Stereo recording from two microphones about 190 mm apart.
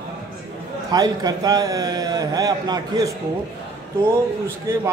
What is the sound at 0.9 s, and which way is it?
A man's voice, 20° right (ahead or behind).